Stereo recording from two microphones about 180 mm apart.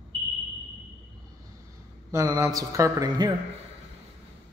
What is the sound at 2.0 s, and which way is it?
Speech, 20° right (ahead or behind).